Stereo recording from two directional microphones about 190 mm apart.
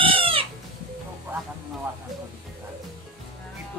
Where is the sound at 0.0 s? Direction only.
30° right (ahead or behind).